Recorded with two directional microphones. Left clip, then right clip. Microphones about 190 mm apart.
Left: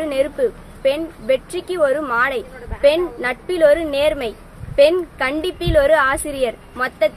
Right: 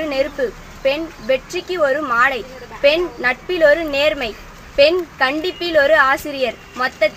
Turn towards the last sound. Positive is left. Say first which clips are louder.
# right 1 dB
turn(degrees=25)  # may be behind; listen again after turning